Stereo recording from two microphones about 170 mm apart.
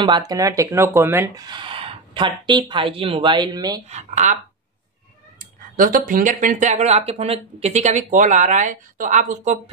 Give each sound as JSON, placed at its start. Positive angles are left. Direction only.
{"t": 0.0, "sound": "speech", "side_deg": -25}
{"t": 3.9, "sound": "speech", "side_deg": -45}
{"t": 5.4, "sound": "speech", "side_deg": -55}